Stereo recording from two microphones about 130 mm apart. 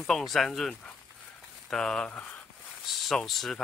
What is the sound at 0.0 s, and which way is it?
Speech, centre (ahead or behind).